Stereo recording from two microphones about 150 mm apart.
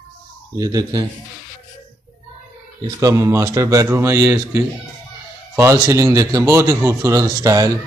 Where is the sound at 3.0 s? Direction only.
20° right (ahead or behind).